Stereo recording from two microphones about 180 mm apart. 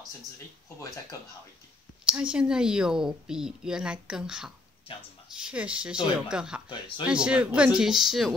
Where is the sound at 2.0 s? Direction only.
5° right (ahead or behind).